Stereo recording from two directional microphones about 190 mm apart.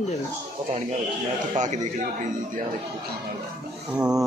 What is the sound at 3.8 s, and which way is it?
Speech, 5° right (ahead or behind).